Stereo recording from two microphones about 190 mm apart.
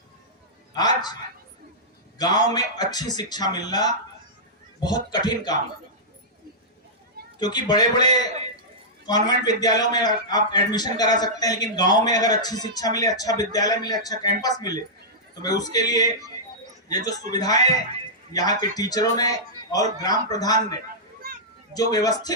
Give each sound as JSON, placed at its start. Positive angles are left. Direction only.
{"t": 0.7, "sound": "a man's voice", "side_deg": 20}
{"t": 2.1, "sound": "a man's voice", "side_deg": 20}
{"t": 7.3, "sound": "a man's voice", "side_deg": 20}
{"t": 9.0, "sound": "a man's voice", "side_deg": 20}
{"t": 17.1, "sound": "a man's voice", "side_deg": 20}